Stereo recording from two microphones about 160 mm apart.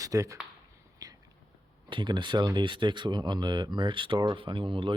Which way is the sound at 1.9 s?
30° right (ahead or behind).